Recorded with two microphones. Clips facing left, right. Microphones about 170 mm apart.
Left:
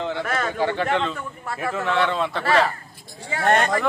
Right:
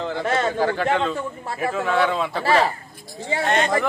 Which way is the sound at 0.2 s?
30° right (ahead or behind).